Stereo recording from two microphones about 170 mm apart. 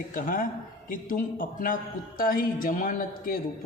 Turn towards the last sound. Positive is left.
turn(degrees=55)  # may be behind; listen again after turning